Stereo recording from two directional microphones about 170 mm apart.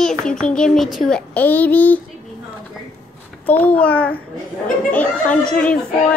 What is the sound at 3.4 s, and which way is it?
Speech, 10° left (ahead or behind).